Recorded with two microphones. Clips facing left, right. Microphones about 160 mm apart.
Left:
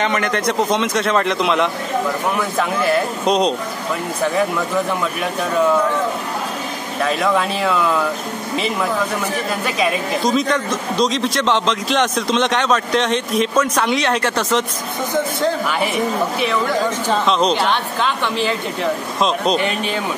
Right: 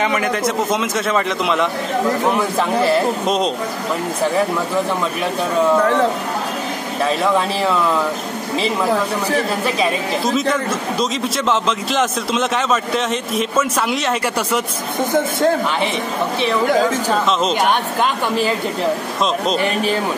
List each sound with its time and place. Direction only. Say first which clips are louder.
0.0 s a man's voice: right 1 dB; 5° right (ahead or behind)
3.3 s a man's voice: left 2 dB; centre (ahead or behind)
10.2 s a man's voice: left 1 dB; 5° right (ahead or behind)
17.3 s a man's voice: left 4 dB; 5° right (ahead or behind)
17.6 s speech: right 2 dB; 45° right (ahead or behind)
19.2 s a man's voice: left 2 dB; centre (ahead or behind)